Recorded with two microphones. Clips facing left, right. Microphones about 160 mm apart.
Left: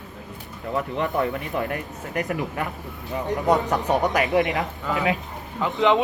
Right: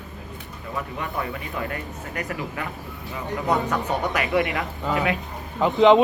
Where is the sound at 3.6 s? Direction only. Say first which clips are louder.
Left 3 dB; 40° left (ahead or behind).